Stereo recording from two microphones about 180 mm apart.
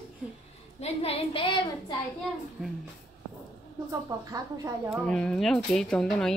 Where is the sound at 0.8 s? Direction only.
30° left (ahead or behind).